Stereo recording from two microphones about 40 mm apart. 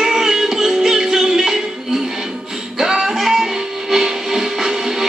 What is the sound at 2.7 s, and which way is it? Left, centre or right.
Music, centre.